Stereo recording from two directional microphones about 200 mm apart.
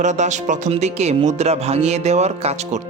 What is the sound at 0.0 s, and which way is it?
Speech, 35° right (ahead or behind).